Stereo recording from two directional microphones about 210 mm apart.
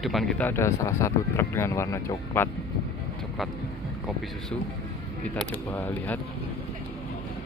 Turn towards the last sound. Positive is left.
turn(degrees=10)  # may be behind; listen again after turning